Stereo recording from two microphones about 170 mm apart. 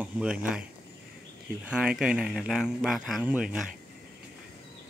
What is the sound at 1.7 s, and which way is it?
Speech, 5° right (ahead or behind).